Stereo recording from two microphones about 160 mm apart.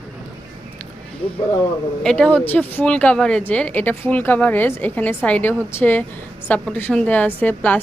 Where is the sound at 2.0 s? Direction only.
5° left (ahead or behind).